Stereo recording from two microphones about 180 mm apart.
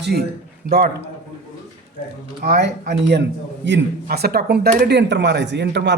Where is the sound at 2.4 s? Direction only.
60° right (ahead or behind).